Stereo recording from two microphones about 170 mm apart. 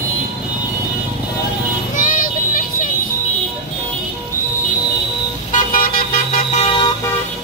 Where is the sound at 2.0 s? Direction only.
50° left (ahead or behind).